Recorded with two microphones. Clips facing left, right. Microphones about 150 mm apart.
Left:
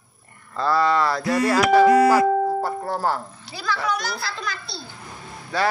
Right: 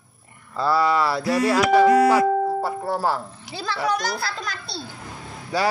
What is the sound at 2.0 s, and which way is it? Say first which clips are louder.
Music: left 1 dB; centre (ahead or behind).